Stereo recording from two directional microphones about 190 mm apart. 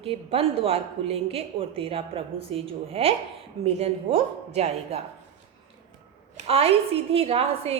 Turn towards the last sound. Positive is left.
turn(degrees=-30)  # may be behind; listen again after turning